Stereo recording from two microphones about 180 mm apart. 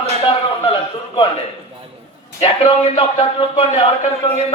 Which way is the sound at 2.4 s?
30° left (ahead or behind).